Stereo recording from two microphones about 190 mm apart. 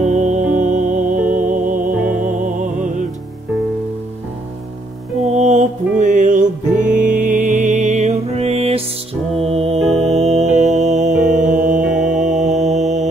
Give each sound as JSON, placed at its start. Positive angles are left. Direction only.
{"t": 0.0, "sound": "music", "side_deg": -40}
{"t": 5.4, "sound": "music", "side_deg": -40}
{"t": 11.8, "sound": "music", "side_deg": -5}
{"t": 12.3, "sound": "music", "side_deg": -40}